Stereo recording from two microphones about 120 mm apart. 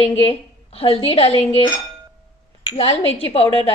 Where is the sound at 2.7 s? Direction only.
55° left (ahead or behind).